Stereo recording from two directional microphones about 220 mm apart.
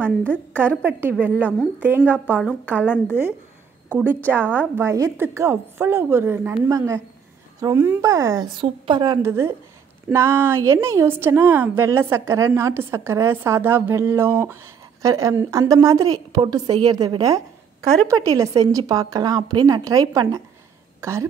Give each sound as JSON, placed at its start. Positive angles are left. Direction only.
{"t": 0.6, "sound": "a woman's voice", "side_deg": -10}